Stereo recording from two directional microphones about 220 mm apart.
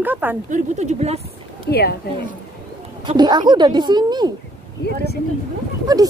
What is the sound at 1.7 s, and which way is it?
Speech, 45° left (ahead or behind).